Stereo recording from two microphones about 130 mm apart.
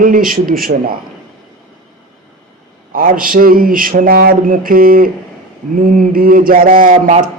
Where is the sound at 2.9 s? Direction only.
90° right.